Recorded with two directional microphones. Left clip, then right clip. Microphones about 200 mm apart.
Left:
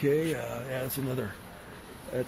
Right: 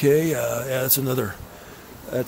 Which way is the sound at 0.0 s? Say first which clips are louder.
Right 9 dB; 45° right (ahead or behind).